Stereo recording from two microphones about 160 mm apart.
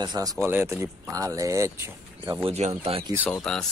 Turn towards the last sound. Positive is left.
turn(degrees=5)  # may be behind; listen again after turning